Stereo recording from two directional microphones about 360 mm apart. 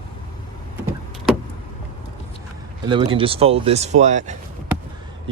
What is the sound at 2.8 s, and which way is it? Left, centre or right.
Speech, centre.